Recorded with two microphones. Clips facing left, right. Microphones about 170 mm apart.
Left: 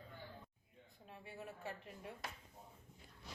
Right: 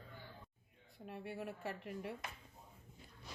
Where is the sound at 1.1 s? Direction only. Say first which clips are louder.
Right 7 dB; 70° right (ahead or behind).